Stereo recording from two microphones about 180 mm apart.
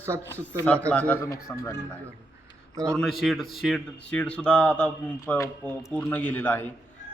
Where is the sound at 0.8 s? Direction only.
10° left (ahead or behind).